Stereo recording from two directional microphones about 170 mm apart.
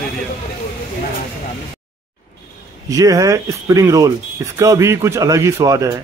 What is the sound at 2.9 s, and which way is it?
A man's voice, 20° right (ahead or behind).